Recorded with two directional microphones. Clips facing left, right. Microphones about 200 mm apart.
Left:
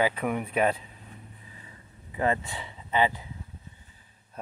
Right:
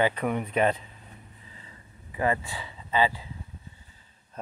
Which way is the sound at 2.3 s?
20° left (ahead or behind).